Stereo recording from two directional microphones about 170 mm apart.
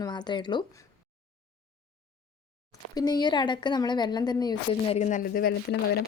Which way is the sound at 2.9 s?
25° left (ahead or behind).